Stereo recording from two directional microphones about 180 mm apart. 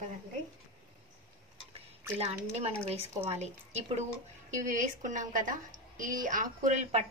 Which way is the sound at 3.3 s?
35° right (ahead or behind).